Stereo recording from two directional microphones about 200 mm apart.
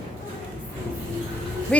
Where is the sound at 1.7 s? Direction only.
5° left (ahead or behind).